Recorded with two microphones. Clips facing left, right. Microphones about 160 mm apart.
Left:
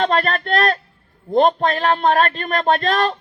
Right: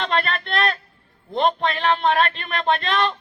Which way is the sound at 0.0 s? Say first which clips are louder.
Left 5 dB; 40° left (ahead or behind).